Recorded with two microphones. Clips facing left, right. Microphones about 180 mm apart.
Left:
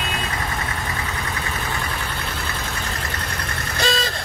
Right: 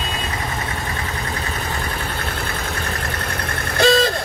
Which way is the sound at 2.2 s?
55° right (ahead or behind).